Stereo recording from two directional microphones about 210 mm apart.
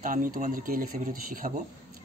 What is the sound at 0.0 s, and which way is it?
Speech, 40° right (ahead or behind).